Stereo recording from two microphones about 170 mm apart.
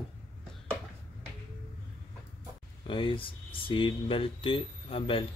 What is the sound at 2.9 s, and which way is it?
Speech, 30° left (ahead or behind).